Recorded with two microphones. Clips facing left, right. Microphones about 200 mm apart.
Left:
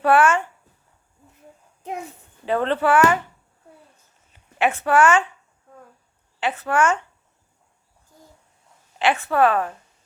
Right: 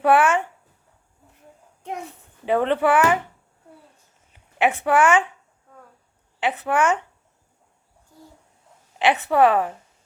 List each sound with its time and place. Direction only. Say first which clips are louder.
0.0 s speech: even; 15° right (ahead or behind)
2.5 s speech: right 1 dB; 15° right (ahead or behind)
4.3 s a woman's voice: right 1 dB; 15° right (ahead or behind)
6.4 s speech: even; 15° right (ahead or behind)
9.0 s a woman's voice: right 1 dB; 20° right (ahead or behind)